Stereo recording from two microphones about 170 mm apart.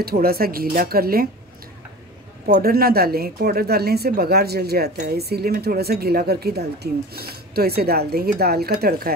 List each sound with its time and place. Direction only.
0.0 s speech: 65° right (ahead or behind)
2.4 s speech: 65° right (ahead or behind)